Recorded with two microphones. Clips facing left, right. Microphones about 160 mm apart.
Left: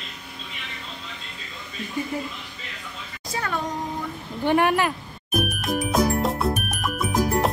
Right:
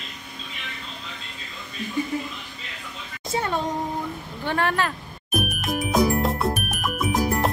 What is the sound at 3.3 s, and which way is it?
Speech, 25° right (ahead or behind).